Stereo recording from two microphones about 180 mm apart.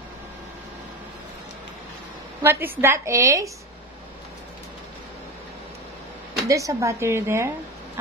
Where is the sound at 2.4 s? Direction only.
10° right (ahead or behind).